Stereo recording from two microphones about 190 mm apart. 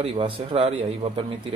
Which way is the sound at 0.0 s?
30° right (ahead or behind).